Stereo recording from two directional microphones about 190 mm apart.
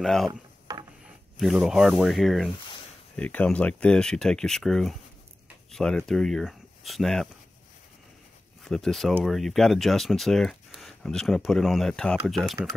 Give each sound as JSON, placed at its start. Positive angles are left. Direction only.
{"t": 0.0, "sound": "speech", "side_deg": 0}
{"t": 0.3, "sound": "mechanisms", "side_deg": -20}
{"t": 1.0, "sound": "speech", "side_deg": -5}
{"t": 8.6, "sound": "speech", "side_deg": 0}